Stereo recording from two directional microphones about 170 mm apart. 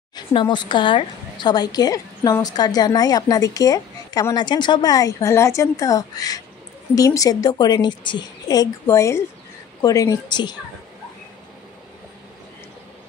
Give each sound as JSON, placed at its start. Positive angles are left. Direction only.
{"t": 0.1, "sound": "a woman's voice", "side_deg": 30}